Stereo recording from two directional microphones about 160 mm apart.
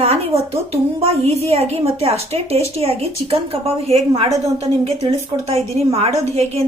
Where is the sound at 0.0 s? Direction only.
40° right (ahead or behind).